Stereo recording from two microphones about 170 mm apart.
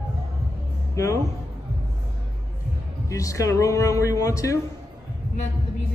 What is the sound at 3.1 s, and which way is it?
A man's voice, 20° left (ahead or behind).